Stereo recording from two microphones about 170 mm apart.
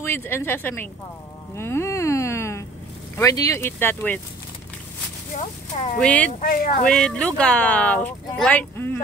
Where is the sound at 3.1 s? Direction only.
20° left (ahead or behind).